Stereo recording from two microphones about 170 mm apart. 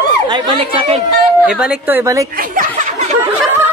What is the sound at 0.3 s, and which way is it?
Speech, 30° right (ahead or behind).